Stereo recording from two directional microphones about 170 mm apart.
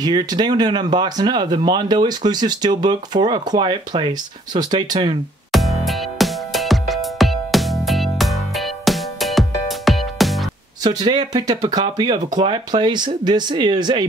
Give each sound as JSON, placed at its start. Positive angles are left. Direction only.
{"t": 0.0, "sound": "speech", "side_deg": -25}
{"t": 5.5, "sound": "music", "side_deg": 0}
{"t": 10.8, "sound": "speech", "side_deg": -25}